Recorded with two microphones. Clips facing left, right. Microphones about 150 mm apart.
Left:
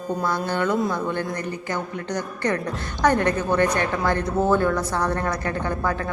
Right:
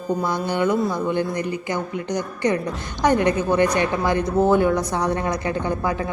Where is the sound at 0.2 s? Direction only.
15° right (ahead or behind).